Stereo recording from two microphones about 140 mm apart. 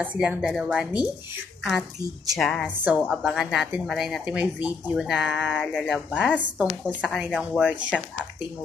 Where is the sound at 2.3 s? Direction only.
Centre (ahead or behind).